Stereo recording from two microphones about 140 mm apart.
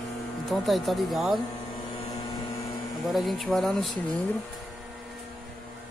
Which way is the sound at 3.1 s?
Centre (ahead or behind).